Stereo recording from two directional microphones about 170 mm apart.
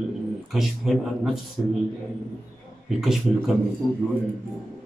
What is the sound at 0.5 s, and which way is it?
Speech, centre (ahead or behind).